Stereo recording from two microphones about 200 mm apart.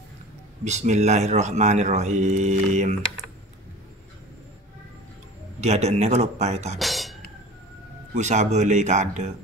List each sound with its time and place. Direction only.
0.7 s speech: 35° right (ahead or behind)
5.6 s speech: 35° right (ahead or behind)
6.8 s music: centre (ahead or behind)
8.1 s speech: 35° right (ahead or behind)